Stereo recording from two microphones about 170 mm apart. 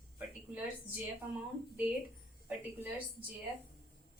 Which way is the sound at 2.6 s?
10° right (ahead or behind).